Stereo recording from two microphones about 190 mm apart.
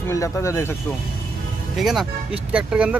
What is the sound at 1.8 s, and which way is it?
Speech, centre (ahead or behind).